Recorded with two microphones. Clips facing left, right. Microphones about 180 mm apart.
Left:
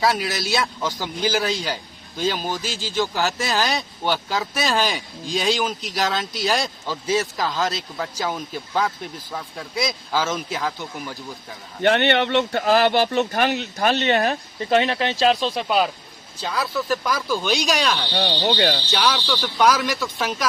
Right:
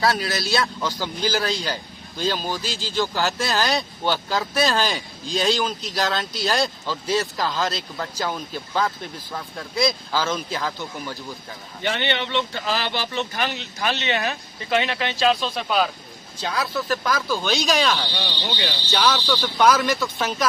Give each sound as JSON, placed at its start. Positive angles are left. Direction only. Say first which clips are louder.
{"t": 0.0, "sound": "a man's voice", "louder": "left 1 dB", "side_deg": 15}
{"t": 7.3, "sound": "speech", "louder": "left 1 dB", "side_deg": 0}
{"t": 10.1, "sound": "a man's voice", "louder": "left 1 dB", "side_deg": 10}
{"t": 11.8, "sound": "speech", "louder": "left 7 dB", "side_deg": 55}
{"t": 14.8, "sound": "speech", "louder": "left 2 dB", "side_deg": 35}
{"t": 16.4, "sound": "speech", "louder": "left 1 dB", "side_deg": 5}
{"t": 18.1, "sound": "speech", "louder": "left 7 dB", "side_deg": 55}
{"t": 18.9, "sound": "speech", "louder": "right 1 dB", "side_deg": 0}